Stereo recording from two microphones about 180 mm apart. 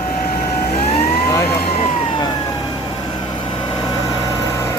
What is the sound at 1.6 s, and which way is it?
Vehicle, 35° left (ahead or behind).